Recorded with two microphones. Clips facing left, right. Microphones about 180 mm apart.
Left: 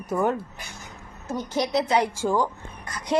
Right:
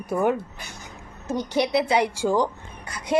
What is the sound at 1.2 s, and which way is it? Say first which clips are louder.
A woman's voice: right 3 dB; 20° right (ahead or behind).